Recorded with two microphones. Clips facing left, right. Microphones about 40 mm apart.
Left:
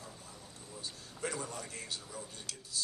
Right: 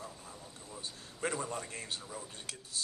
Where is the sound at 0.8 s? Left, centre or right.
Right.